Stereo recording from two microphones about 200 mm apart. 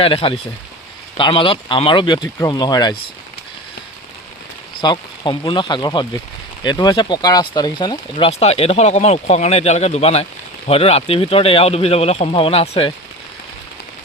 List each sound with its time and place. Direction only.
0.0 s speech: 30° left (ahead or behind)
4.8 s speech: 25° left (ahead or behind)